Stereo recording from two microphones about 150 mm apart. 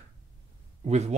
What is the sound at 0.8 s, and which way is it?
Speech, 45° right (ahead or behind).